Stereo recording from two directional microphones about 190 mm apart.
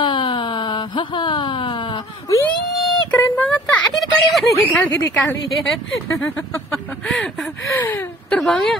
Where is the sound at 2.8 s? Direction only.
5° left (ahead or behind).